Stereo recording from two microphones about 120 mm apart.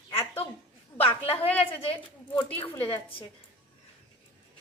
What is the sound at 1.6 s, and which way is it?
Speech, 50° left (ahead or behind).